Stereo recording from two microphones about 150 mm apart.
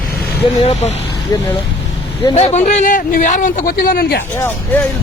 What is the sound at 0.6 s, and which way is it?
Speech, 45° left (ahead or behind).